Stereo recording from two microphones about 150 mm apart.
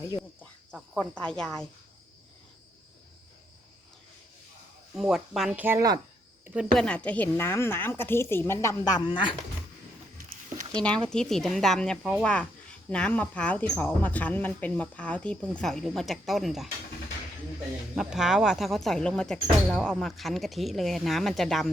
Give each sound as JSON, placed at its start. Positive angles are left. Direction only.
{"t": 0.7, "sound": "speech", "side_deg": 5}
{"t": 4.9, "sound": "speech", "side_deg": 0}
{"t": 6.4, "sound": "speech", "side_deg": -5}
{"t": 6.7, "sound": "a woman's voice", "side_deg": 10}
{"t": 10.7, "sound": "a woman's voice", "side_deg": 5}
{"t": 17.9, "sound": "speech", "side_deg": -5}